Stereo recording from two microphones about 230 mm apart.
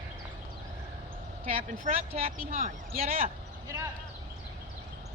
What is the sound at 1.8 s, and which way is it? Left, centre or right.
Speech, right.